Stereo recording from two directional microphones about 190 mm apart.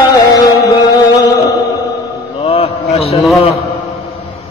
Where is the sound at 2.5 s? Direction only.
30° left (ahead or behind).